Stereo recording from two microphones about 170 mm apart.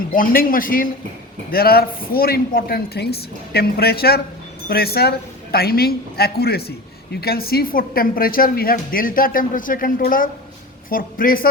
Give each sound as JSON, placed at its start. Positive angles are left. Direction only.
{"t": 0.1, "sound": "a woman's voice", "side_deg": 55}